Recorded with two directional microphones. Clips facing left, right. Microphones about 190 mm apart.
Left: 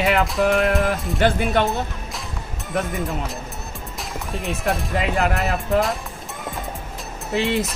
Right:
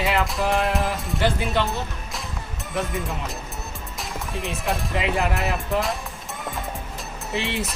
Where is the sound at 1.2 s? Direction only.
55° left (ahead or behind).